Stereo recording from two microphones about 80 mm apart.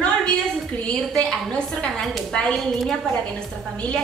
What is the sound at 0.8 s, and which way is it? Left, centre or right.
A woman's voice, centre.